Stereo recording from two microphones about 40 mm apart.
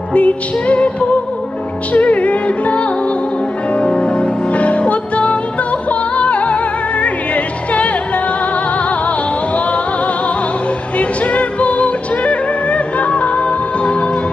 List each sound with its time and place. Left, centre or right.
0.1 s music: left
11.0 s music: left